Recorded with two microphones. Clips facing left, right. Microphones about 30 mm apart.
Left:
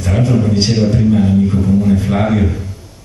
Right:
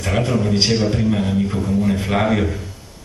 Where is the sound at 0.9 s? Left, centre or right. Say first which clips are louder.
Left 6 dB; centre.